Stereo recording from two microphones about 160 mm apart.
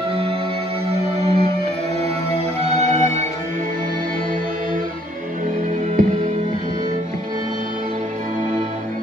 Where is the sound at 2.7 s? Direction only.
45° right (ahead or behind).